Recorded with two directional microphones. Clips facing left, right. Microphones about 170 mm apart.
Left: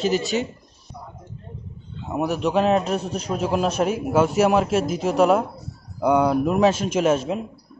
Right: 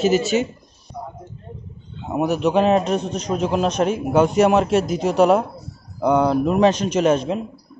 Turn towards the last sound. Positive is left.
turn(degrees=5)  # may be behind; listen again after turning